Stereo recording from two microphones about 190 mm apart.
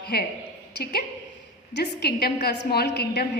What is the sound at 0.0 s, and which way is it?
Speech, 55° left (ahead or behind).